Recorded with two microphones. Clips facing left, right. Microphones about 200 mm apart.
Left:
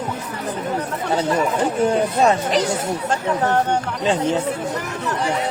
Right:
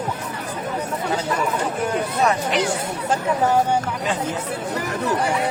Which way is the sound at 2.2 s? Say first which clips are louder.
Left 2 dB; 25° left (ahead or behind).